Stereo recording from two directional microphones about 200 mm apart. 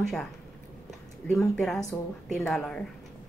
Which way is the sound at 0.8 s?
5° left (ahead or behind).